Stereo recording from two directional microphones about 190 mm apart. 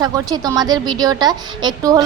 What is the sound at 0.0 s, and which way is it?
A woman's voice, 20° right (ahead or behind).